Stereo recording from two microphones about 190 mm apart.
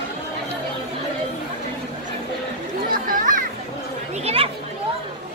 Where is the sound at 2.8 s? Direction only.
50° right (ahead or behind).